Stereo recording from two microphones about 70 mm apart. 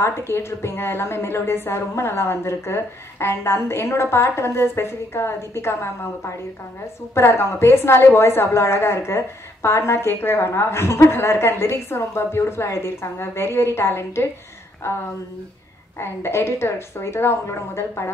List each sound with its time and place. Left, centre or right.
0.0 s a woman's voice: left